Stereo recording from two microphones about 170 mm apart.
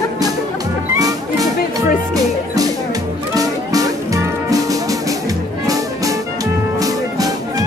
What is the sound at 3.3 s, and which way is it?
Music, 20° right (ahead or behind).